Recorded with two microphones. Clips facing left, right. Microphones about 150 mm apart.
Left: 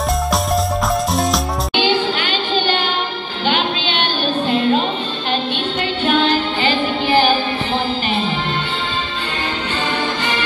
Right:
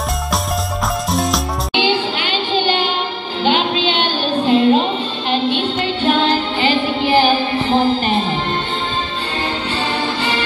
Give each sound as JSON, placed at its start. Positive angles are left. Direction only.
{"t": 1.8, "sound": "a sound", "side_deg": -25}
{"t": 3.4, "sound": "music", "side_deg": -25}
{"t": 6.0, "sound": "music", "side_deg": -25}
{"t": 7.7, "sound": "music", "side_deg": -45}